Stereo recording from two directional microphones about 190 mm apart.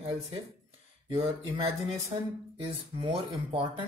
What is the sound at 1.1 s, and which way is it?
Speech, 30° right (ahead or behind).